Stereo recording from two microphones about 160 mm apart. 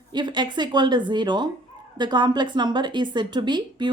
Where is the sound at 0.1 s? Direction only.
25° right (ahead or behind).